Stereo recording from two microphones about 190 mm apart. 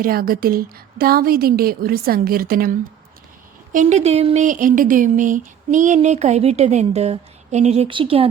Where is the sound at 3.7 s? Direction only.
40° right (ahead or behind).